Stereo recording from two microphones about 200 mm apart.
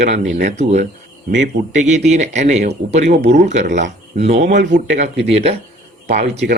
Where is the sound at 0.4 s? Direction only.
35° right (ahead or behind).